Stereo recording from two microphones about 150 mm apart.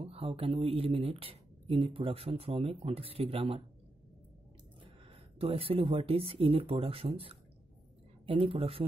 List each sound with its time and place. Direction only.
0.0 s speech: 40° right (ahead or behind)
4.8 s speech: 40° right (ahead or behind)